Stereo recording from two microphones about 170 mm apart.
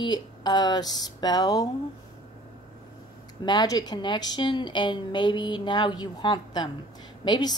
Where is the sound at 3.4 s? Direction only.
25° left (ahead or behind).